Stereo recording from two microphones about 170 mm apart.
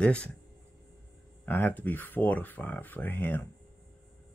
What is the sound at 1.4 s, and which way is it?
Speech, 10° left (ahead or behind).